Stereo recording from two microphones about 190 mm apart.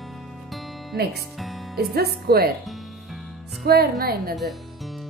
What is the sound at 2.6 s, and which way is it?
Music, centre (ahead or behind).